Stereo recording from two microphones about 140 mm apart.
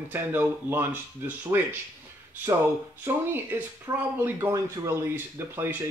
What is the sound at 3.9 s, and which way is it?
Speech, 25° right (ahead or behind).